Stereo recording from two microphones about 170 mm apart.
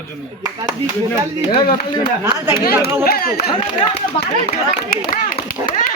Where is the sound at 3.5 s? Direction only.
30° left (ahead or behind).